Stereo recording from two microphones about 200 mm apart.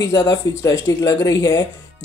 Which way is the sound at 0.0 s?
15° left (ahead or behind).